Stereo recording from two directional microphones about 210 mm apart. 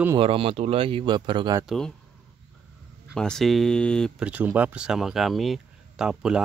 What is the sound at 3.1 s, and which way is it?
Speech, 5° left (ahead or behind).